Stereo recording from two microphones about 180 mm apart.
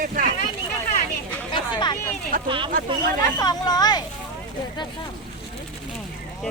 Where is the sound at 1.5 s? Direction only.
25° left (ahead or behind).